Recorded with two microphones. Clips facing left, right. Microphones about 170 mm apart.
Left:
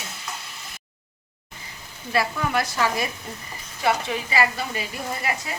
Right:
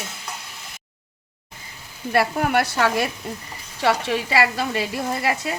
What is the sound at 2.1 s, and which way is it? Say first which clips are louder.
A woman's voice: right 4 dB; 60° right (ahead or behind).